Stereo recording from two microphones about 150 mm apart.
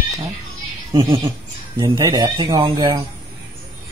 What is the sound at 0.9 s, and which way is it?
Speech, 35° right (ahead or behind).